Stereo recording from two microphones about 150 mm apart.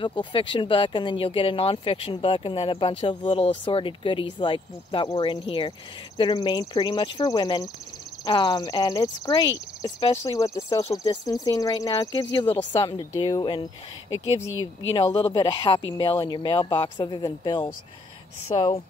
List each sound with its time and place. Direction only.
0.0 s speech: 30° left (ahead or behind)
10.3 s speech: 20° left (ahead or behind)
15.1 s speech: 30° left (ahead or behind)